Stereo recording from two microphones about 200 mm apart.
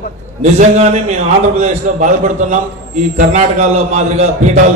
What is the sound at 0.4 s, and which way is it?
A man's voice, 35° right (ahead or behind).